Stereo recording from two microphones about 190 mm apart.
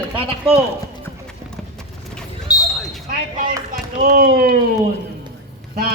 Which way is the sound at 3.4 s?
45° right (ahead or behind).